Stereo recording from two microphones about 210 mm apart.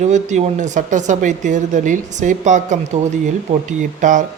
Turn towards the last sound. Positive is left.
turn(degrees=-35)  # may be behind; listen again after turning